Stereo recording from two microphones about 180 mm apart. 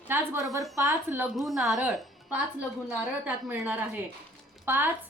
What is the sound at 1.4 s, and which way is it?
Speech, centre (ahead or behind).